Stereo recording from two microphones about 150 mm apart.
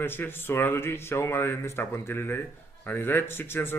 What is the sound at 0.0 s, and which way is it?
Speech, 15° left (ahead or behind).